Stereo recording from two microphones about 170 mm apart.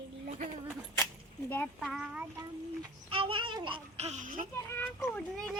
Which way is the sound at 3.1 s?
30° right (ahead or behind).